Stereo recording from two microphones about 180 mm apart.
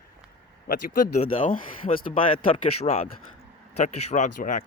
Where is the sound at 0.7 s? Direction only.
55° left (ahead or behind).